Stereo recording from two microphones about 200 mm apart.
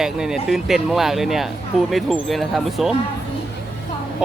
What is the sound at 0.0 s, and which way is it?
Speech, centre (ahead or behind).